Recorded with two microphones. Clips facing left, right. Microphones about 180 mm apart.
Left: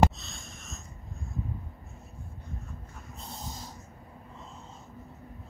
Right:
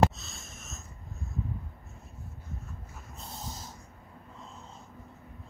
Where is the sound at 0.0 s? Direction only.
Centre (ahead or behind).